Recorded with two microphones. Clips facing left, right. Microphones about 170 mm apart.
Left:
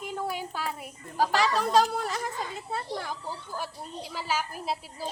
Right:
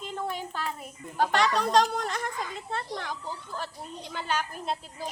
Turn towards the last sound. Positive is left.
turn(degrees=5)  # may be behind; listen again after turning